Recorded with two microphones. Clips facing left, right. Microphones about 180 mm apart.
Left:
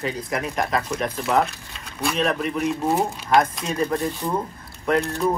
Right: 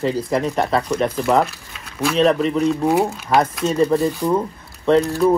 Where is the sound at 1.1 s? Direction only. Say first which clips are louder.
Right 3 dB; centre (ahead or behind).